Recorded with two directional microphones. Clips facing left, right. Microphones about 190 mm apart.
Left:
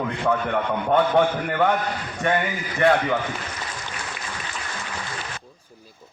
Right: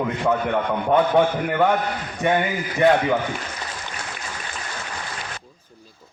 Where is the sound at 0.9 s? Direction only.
10° right (ahead or behind).